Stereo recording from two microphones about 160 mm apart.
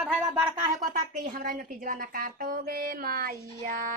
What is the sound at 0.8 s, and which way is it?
A woman's voice, 55° right (ahead or behind).